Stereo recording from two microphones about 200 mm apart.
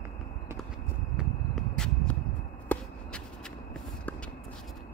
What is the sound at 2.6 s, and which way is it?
Basketball bounce, 10° left (ahead or behind).